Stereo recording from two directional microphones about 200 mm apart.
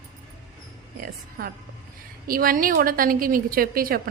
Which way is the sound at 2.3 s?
45° right (ahead or behind).